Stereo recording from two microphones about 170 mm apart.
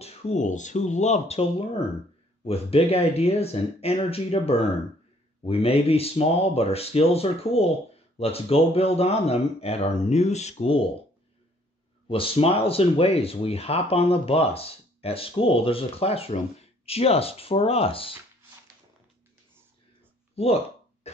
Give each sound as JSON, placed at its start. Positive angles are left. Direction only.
{"t": 0.0, "sound": "speech", "side_deg": 40}
{"t": 12.1, "sound": "speech", "side_deg": 35}
{"t": 20.3, "sound": "a sound", "side_deg": 35}